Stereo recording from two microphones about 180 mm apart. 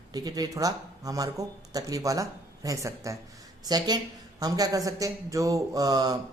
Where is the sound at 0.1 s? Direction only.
20° right (ahead or behind).